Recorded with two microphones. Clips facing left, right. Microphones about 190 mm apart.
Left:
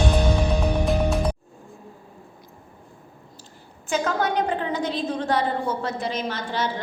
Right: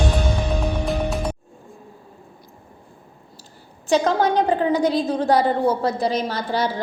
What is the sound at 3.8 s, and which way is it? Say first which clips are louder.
A woman's voice: right 6 dB; 35° right (ahead or behind).